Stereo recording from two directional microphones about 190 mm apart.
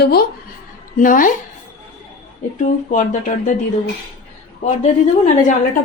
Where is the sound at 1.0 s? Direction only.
45° left (ahead or behind).